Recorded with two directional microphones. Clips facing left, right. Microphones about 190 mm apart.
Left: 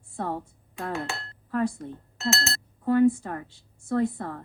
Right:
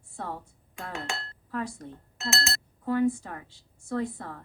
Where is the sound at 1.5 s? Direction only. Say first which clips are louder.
Left 7 dB; 55° left (ahead or behind).